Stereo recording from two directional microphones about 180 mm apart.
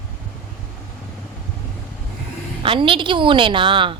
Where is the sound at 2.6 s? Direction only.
30° right (ahead or behind).